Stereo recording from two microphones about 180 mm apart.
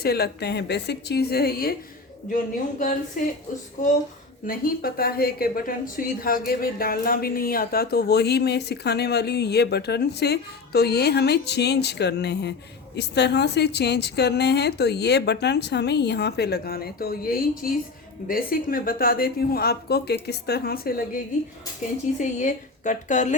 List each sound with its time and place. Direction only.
0.0 s a woman's voice: 60° left (ahead or behind)
4.4 s a woman's voice: 55° left (ahead or behind)
22.2 s a woman's voice: 45° left (ahead or behind)